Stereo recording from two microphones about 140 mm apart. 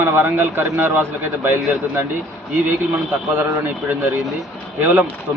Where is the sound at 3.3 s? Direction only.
15° right (ahead or behind).